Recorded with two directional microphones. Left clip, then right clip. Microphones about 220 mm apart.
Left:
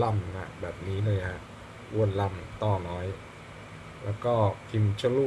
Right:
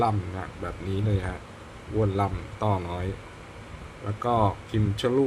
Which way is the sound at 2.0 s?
25° right (ahead or behind).